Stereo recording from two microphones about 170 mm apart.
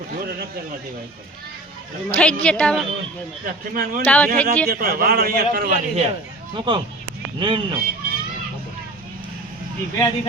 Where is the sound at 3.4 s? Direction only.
55° right (ahead or behind).